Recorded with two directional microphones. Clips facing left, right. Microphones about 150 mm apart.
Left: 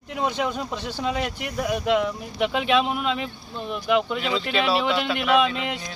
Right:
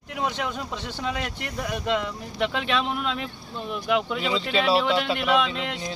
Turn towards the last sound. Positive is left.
turn(degrees=5)  # may be behind; listen again after turning